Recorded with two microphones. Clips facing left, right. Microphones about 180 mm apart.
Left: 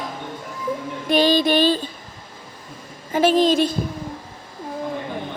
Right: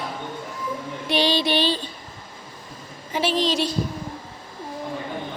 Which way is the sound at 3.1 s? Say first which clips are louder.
Left 6 dB; 50° left (ahead or behind).